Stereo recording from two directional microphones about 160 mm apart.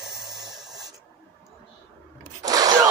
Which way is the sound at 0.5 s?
Centre (ahead or behind).